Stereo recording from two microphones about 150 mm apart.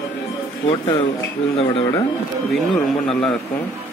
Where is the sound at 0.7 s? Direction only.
40° left (ahead or behind).